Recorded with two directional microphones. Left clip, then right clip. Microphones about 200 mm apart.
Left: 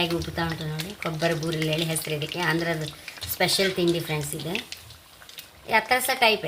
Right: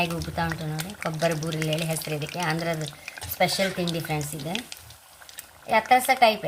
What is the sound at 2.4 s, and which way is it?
Speech, 15° left (ahead or behind).